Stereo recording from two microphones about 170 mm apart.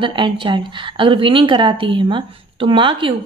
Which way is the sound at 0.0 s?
30° right (ahead or behind).